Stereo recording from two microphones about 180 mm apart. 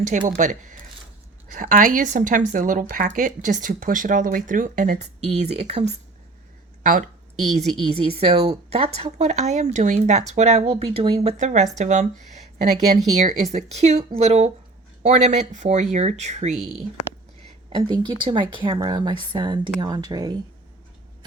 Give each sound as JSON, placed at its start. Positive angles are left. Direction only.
{"t": 0.1, "sound": "speech", "side_deg": -45}
{"t": 7.5, "sound": "speech", "side_deg": -35}
{"t": 17.7, "sound": "speech", "side_deg": -25}